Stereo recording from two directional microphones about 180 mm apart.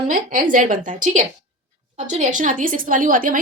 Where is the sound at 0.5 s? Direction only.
50° right (ahead or behind).